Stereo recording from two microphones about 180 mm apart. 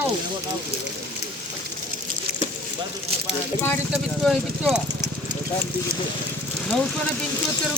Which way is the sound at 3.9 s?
Centre (ahead or behind).